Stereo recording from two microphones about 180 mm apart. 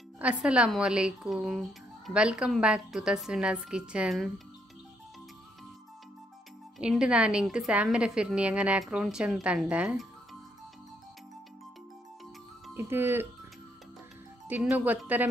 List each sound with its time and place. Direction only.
0.2 s speech: 5° right (ahead or behind)
6.8 s speech: 5° right (ahead or behind)
12.7 s speech: 15° right (ahead or behind)
14.5 s speech: 5° right (ahead or behind)